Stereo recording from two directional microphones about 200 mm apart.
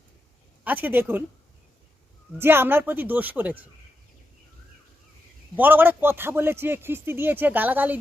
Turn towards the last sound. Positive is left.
turn(degrees=-10)  # may be behind; listen again after turning